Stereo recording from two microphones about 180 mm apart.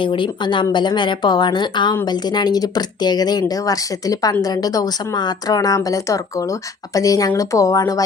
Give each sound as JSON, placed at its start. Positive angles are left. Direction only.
{"t": 0.0, "sound": "speech", "side_deg": 25}